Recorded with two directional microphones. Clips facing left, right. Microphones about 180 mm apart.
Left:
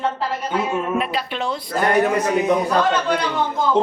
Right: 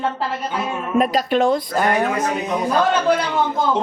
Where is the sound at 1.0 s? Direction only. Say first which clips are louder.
Right 7 dB; 45° right (ahead or behind).